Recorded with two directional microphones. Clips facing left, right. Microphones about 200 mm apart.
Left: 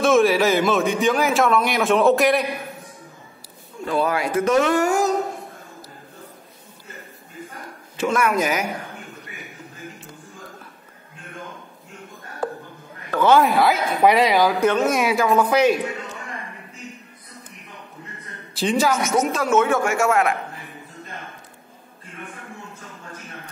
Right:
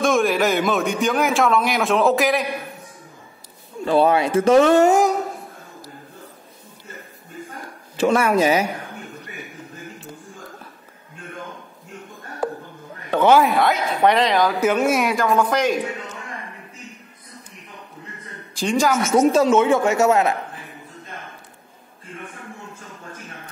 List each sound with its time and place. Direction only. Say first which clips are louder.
0.0 s a man's voice: left 2 dB; centre (ahead or behind)
3.8 s speech: right 5 dB; 30° right (ahead or behind)
8.0 s speech: right 4 dB; 35° right (ahead or behind)
13.3 s a man's voice: even; centre (ahead or behind)
14.6 s a man's voice: even; 5° right (ahead or behind)
18.6 s a man's voice: even; centre (ahead or behind)
19.3 s speech: right 3 dB; 20° right (ahead or behind)